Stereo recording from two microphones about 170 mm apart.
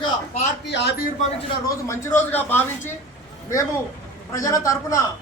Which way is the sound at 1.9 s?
15° left (ahead or behind).